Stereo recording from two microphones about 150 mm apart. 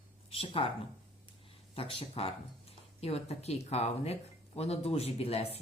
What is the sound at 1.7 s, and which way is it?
Speech, 40° left (ahead or behind).